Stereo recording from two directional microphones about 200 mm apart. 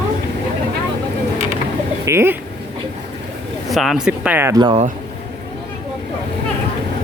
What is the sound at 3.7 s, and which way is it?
Speech, centre (ahead or behind).